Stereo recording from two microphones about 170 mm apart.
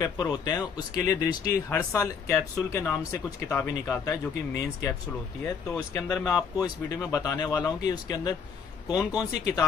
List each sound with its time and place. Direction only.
0.0 s speech: 20° left (ahead or behind)